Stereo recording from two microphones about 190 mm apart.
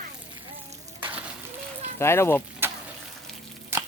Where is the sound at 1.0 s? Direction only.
10° right (ahead or behind).